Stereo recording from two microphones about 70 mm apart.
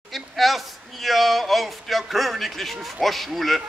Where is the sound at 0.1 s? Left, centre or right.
Centre.